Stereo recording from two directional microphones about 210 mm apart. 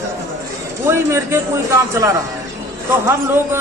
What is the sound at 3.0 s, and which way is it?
Speech, 10° right (ahead or behind).